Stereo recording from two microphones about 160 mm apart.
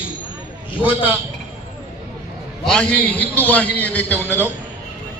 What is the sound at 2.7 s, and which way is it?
A man's voice, 5° left (ahead or behind).